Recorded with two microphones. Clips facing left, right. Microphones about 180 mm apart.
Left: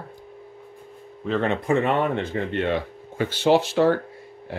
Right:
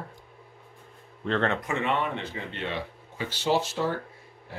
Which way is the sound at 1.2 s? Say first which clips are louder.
Left 3 dB; 10° left (ahead or behind).